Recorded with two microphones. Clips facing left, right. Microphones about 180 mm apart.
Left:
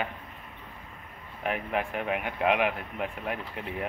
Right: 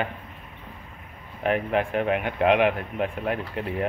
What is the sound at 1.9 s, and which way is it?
Speech, 60° right (ahead or behind).